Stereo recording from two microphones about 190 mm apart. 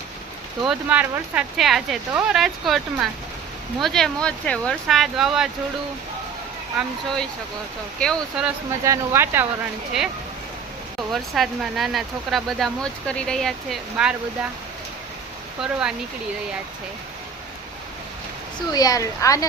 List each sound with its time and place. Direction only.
0.6 s speech: 5° right (ahead or behind)
6.7 s speech: centre (ahead or behind)
8.8 s speech: 15° right (ahead or behind)
11.1 s speech: centre (ahead or behind)
15.6 s speech: 5° right (ahead or behind)
18.7 s speech: 20° left (ahead or behind)